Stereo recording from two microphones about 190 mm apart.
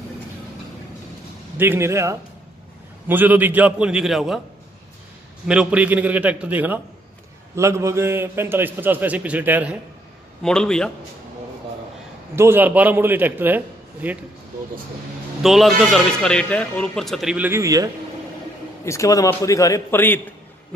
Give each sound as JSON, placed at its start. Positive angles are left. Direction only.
{"t": 1.6, "sound": "a man's voice", "side_deg": -10}
{"t": 5.5, "sound": "a man's voice", "side_deg": -5}
{"t": 10.4, "sound": "a man's voice", "side_deg": 5}
{"t": 12.4, "sound": "a man's voice", "side_deg": -10}
{"t": 15.4, "sound": "a man's voice", "side_deg": 0}
{"t": 18.9, "sound": "a man's voice", "side_deg": 15}